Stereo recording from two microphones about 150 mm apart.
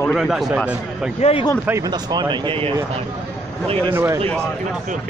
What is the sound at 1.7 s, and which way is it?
Speech, 25° right (ahead or behind).